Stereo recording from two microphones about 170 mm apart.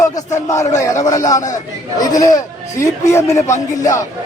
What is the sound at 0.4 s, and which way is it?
Speech, 20° left (ahead or behind).